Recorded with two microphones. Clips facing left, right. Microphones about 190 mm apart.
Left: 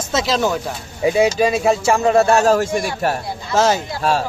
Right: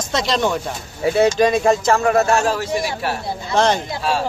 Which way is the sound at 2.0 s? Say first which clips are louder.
Left 5 dB; 30° left (ahead or behind).